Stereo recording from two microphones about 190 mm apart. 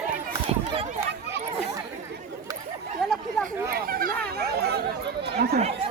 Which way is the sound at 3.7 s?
50° right (ahead or behind).